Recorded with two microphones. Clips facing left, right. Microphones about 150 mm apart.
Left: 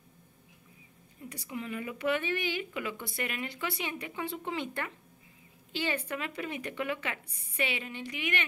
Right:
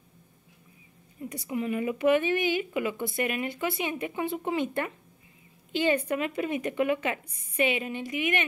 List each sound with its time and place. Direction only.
1.5 s speech: 20° right (ahead or behind)